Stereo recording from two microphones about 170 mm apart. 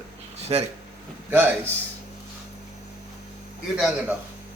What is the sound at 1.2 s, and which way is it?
Speech, 10° right (ahead or behind).